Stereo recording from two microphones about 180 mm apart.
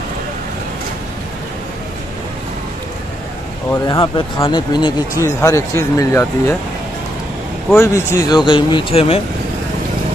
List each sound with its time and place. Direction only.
3.7 s speech: 20° left (ahead or behind)
7.7 s speech: 15° left (ahead or behind)
8.5 s speech: 30° left (ahead or behind)